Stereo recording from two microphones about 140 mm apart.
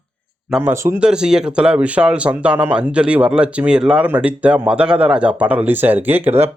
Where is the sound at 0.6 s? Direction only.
20° right (ahead or behind).